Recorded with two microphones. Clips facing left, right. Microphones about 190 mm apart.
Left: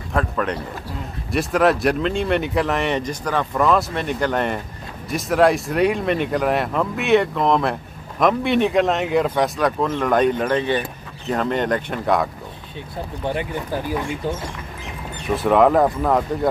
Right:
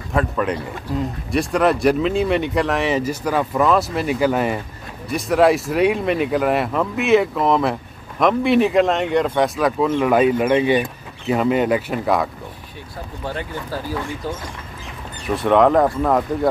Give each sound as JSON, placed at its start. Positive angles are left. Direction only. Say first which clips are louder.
{"t": 0.1, "sound": "speech", "louder": "right 2 dB", "side_deg": 0}
{"t": 13.2, "sound": "speech", "louder": "left 3 dB", "side_deg": 20}
{"t": 15.2, "sound": "speech", "louder": "right 1 dB", "side_deg": 0}